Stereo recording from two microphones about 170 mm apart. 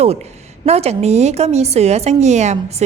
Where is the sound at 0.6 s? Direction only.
40° right (ahead or behind).